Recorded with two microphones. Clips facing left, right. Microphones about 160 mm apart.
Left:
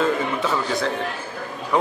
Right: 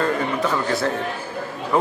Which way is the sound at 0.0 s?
Centre (ahead or behind).